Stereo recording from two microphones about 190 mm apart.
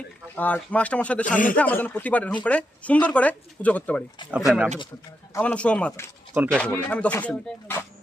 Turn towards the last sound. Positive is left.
turn(degrees=10)  # may be behind; listen again after turning